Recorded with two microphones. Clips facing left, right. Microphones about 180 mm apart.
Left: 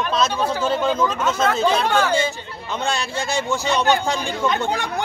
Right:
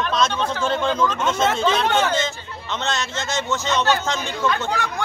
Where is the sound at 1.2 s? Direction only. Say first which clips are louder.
Even; 25° right (ahead or behind).